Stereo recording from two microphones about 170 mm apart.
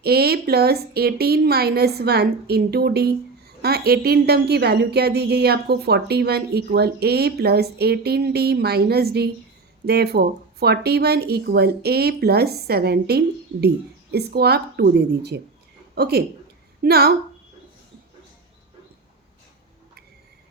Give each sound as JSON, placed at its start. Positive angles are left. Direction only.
{"t": 0.0, "sound": "a woman's voice", "side_deg": -70}